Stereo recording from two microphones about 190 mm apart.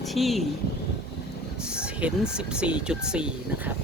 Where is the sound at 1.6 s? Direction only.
5° right (ahead or behind).